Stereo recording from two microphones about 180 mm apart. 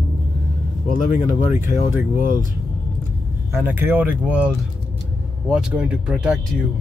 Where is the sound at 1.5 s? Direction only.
10° right (ahead or behind).